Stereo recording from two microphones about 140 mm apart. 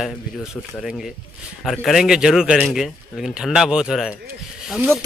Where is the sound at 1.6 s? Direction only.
Centre (ahead or behind).